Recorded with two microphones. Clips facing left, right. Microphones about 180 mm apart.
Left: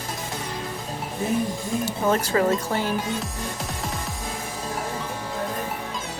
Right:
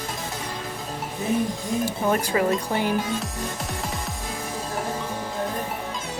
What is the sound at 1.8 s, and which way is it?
Speech, 15° right (ahead or behind).